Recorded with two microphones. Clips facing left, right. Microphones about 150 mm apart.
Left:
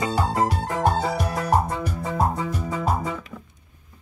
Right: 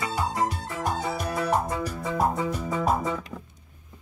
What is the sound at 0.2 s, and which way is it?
Music, 60° left (ahead or behind).